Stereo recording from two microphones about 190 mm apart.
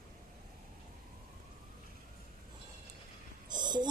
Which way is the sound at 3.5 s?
20° right (ahead or behind).